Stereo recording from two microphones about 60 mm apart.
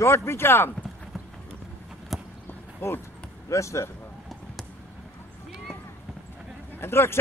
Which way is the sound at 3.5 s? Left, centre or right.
Left.